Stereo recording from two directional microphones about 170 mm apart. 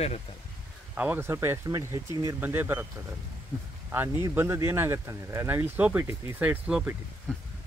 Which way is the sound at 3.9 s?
10° right (ahead or behind).